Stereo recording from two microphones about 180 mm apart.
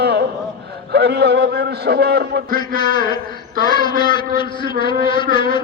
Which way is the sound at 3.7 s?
25° left (ahead or behind).